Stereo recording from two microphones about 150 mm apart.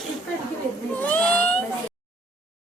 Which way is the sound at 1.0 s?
10° left (ahead or behind).